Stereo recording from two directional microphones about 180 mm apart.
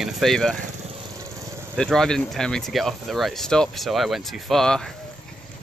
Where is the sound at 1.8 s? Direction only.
5° left (ahead or behind).